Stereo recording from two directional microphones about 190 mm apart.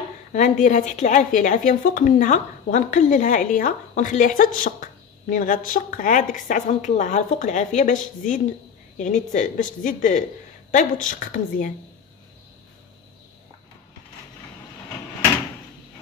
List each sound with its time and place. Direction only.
0.3 s a woman's voice: 40° left (ahead or behind)